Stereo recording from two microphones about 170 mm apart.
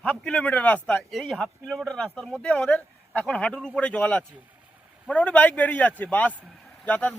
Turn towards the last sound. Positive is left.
turn(degrees=10)  # may be behind; listen again after turning